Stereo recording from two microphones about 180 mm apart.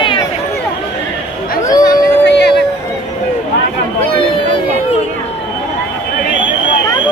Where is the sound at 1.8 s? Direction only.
75° left (ahead or behind).